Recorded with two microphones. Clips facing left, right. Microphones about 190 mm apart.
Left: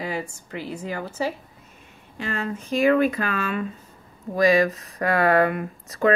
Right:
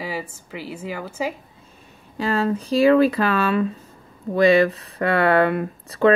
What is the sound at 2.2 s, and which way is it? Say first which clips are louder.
Speech: right 7 dB; 35° right (ahead or behind).